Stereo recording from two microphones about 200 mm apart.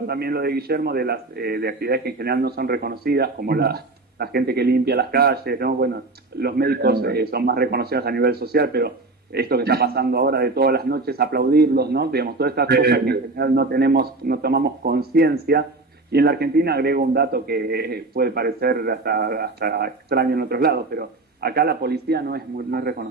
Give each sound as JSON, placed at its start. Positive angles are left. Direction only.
{"t": 0.0, "sound": "a man's voice", "side_deg": -50}